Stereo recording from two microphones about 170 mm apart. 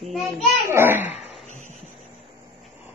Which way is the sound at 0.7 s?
15° right (ahead or behind).